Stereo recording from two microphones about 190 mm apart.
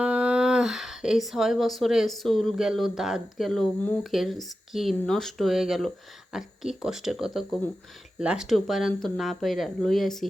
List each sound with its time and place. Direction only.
0.0 s speech: 5° right (ahead or behind)